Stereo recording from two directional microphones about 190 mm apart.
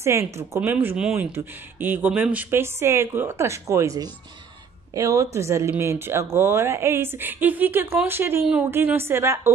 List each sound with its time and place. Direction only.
0.0 s speech: 15° right (ahead or behind)